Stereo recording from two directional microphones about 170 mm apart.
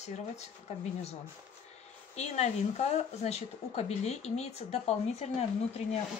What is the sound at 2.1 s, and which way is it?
Speech, 40° left (ahead or behind).